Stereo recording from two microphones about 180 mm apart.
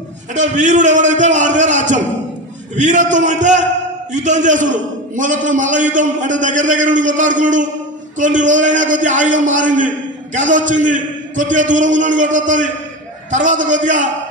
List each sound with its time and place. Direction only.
0.3 s a man's voice: 40° right (ahead or behind)